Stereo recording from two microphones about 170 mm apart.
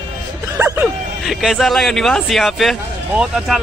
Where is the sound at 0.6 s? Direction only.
15° right (ahead or behind).